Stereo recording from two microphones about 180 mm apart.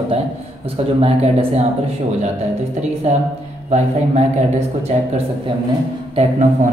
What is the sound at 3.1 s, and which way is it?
Speech, 40° right (ahead or behind).